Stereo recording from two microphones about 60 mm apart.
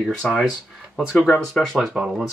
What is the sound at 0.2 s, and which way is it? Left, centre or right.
Speech, left.